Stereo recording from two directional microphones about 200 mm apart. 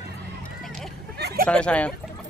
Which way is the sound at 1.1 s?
55° right (ahead or behind).